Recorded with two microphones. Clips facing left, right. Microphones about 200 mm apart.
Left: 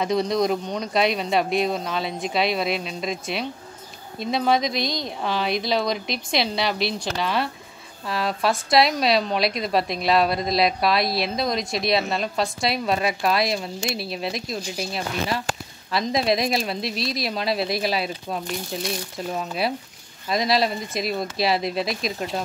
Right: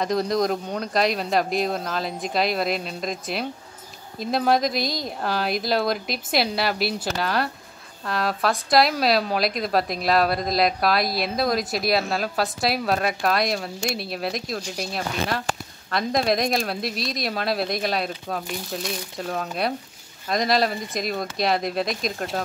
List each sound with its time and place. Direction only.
0.0 s a woman's voice: centre (ahead or behind)